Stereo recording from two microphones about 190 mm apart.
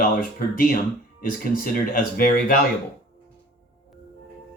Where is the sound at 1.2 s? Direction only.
45° left (ahead or behind).